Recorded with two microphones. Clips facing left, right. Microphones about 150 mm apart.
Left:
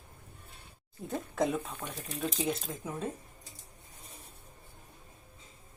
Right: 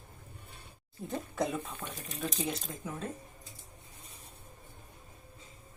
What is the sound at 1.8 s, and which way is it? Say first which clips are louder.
Speech: left 1 dB; 20° left (ahead or behind).